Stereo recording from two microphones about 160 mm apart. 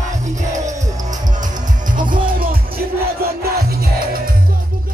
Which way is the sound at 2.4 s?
65° right (ahead or behind).